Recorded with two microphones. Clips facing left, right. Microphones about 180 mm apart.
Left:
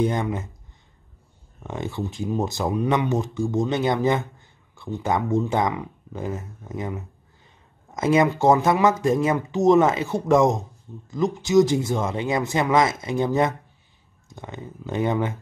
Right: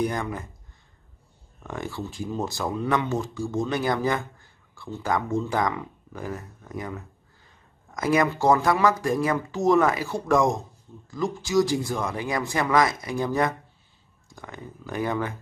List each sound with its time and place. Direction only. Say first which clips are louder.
0.0 s speech: left 4 dB; 25° left (ahead or behind)
1.6 s speech: left 3 dB; 20° left (ahead or behind)